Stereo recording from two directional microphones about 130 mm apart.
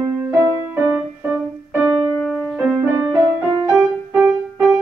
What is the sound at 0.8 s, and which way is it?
Music, centre (ahead or behind).